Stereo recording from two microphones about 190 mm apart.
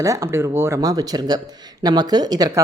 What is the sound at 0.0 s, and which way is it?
Speech, 15° right (ahead or behind).